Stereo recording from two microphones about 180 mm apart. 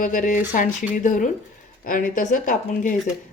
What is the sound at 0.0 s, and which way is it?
A woman's voice, 45° left (ahead or behind).